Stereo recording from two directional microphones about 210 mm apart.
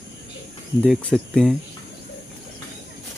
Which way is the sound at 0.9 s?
5° left (ahead or behind).